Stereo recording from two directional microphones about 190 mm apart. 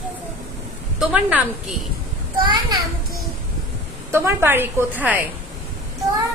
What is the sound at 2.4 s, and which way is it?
Speech, 25° right (ahead or behind).